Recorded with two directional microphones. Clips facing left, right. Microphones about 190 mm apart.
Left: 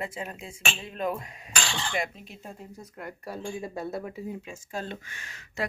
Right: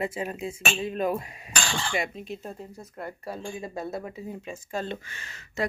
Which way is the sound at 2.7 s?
30° right (ahead or behind).